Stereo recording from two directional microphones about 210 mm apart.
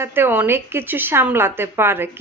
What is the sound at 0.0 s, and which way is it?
Speech, 10° right (ahead or behind).